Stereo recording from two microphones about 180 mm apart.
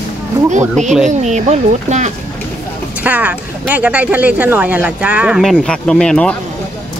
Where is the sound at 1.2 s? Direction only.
40° right (ahead or behind).